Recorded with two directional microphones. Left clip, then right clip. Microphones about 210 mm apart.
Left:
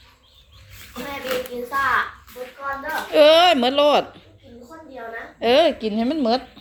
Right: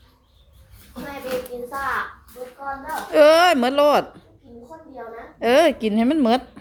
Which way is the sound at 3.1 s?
5° right (ahead or behind).